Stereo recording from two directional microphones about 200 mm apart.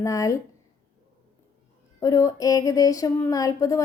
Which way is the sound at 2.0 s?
15° left (ahead or behind).